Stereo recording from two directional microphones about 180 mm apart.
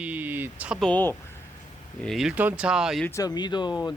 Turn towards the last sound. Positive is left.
turn(degrees=25)  # may be behind; listen again after turning